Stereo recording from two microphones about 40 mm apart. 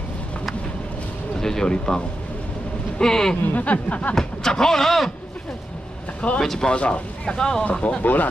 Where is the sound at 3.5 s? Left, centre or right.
Left.